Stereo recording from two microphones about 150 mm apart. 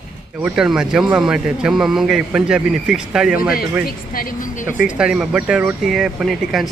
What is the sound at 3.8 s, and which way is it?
Speech, 70° left (ahead or behind).